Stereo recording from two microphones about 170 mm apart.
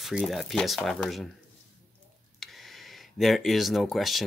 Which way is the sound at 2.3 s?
Centre (ahead or behind).